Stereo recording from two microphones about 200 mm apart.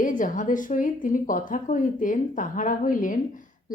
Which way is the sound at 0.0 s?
40° left (ahead or behind).